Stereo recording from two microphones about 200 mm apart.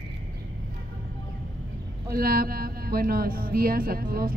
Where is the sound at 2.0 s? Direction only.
50° right (ahead or behind).